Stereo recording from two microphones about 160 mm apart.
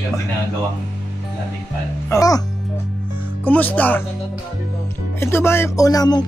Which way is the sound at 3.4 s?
10° left (ahead or behind).